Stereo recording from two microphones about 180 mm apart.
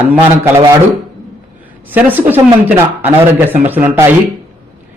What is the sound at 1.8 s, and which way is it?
Speech, 10° right (ahead or behind).